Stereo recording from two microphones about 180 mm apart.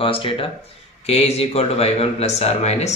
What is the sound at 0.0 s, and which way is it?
Speech, 30° left (ahead or behind).